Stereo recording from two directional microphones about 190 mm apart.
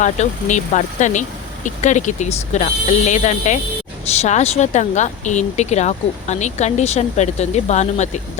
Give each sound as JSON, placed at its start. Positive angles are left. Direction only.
{"t": 0.0, "sound": "speech", "side_deg": 40}